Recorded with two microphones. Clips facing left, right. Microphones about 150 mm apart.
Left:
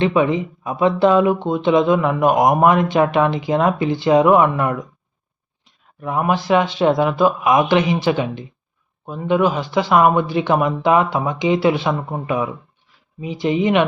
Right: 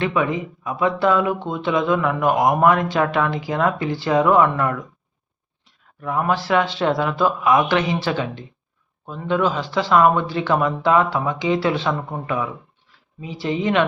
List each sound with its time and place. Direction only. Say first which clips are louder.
0.0 s speech: left 5 dB; 25° left (ahead or behind)